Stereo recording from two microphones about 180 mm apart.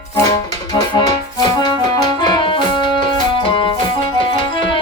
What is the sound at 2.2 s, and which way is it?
Music, 25° left (ahead or behind).